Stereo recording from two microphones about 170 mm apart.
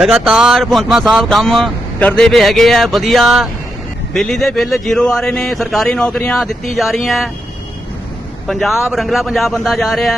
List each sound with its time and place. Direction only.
0.0 s speech: 5° right (ahead or behind)
8.4 s speech: centre (ahead or behind)